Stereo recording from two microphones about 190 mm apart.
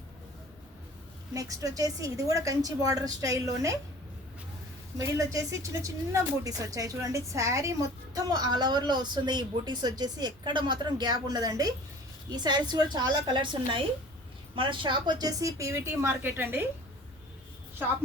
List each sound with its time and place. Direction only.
1.3 s a woman's voice: 15° right (ahead or behind)
4.9 s a woman's voice: 15° right (ahead or behind)